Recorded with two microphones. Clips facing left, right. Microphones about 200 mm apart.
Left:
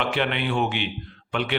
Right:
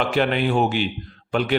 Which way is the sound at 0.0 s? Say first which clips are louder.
Right 5 dB; 40° right (ahead or behind).